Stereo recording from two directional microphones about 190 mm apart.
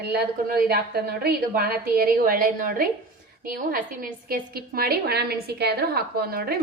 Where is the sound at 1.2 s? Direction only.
50° right (ahead or behind).